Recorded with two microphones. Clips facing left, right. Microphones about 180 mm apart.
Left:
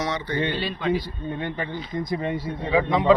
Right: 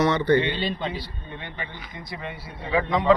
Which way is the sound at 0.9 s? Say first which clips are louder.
Left 8 dB; 40° left (ahead or behind).